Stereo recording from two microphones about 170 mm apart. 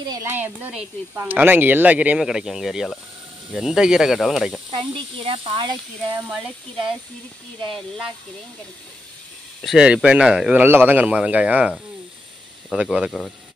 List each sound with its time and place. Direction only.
0.0 s speech: 25° right (ahead or behind)
0.3 s speech: 10° right (ahead or behind)
4.7 s speech: 30° right (ahead or behind)
9.6 s speech: 5° right (ahead or behind)